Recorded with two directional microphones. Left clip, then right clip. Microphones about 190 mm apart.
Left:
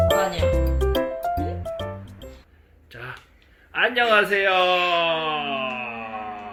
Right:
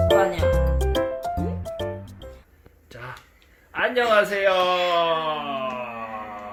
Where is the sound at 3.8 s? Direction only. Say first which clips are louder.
Left 1 dB; 25° right (ahead or behind).